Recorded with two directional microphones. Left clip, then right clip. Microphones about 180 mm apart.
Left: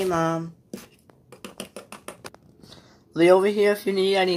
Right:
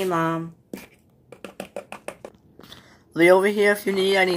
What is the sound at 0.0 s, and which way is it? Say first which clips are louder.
Speech: even; centre (ahead or behind).